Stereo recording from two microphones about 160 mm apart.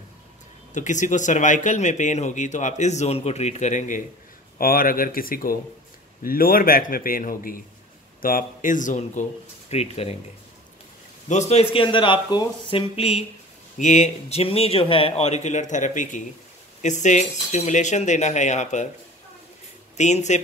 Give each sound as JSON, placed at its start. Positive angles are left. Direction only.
{"t": 0.7, "sound": "speech", "side_deg": 50}
{"t": 4.6, "sound": "a man's voice", "side_deg": 65}
{"t": 11.2, "sound": "speech", "side_deg": 45}
{"t": 13.7, "sound": "speech", "side_deg": 50}
{"t": 20.0, "sound": "speech", "side_deg": 45}